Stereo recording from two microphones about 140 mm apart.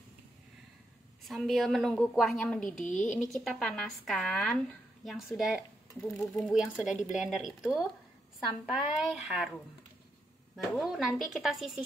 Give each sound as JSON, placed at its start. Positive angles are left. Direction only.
{"t": 1.2, "sound": "speech", "side_deg": 0}
{"t": 2.8, "sound": "a woman's voice", "side_deg": 60}
{"t": 3.2, "sound": "speech", "side_deg": 0}
{"t": 8.9, "sound": "speech", "side_deg": -5}
{"t": 10.5, "sound": "speech", "side_deg": 0}